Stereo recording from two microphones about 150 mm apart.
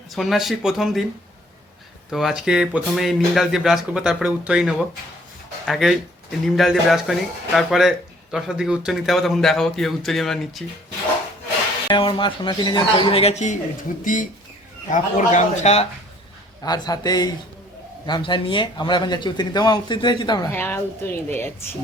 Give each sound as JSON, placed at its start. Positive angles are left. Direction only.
{"t": 0.1, "sound": "speech", "side_deg": 0}
{"t": 2.0, "sound": "speech", "side_deg": 0}
{"t": 11.9, "sound": "speech", "side_deg": 35}
{"t": 16.6, "sound": "a man's voice", "side_deg": 25}
{"t": 20.5, "sound": "a woman's voice", "side_deg": 15}